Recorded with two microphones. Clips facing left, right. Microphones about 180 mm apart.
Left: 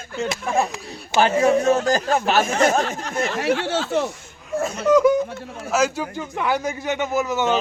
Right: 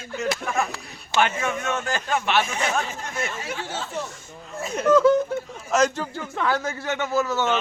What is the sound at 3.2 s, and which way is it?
Speech, 70° left (ahead or behind).